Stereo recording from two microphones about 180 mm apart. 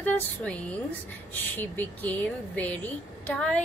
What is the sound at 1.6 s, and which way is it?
A woman's voice, 10° left (ahead or behind).